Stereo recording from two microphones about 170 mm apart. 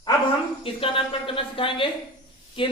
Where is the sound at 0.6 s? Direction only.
30° left (ahead or behind).